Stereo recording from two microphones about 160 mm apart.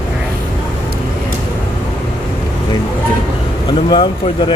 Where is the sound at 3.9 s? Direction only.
30° left (ahead or behind).